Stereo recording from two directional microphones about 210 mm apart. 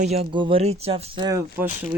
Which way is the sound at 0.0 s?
30° right (ahead or behind).